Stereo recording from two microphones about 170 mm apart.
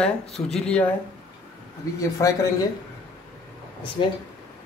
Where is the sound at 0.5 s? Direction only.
5° left (ahead or behind).